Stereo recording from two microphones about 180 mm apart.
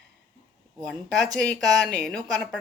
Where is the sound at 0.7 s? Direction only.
Centre (ahead or behind).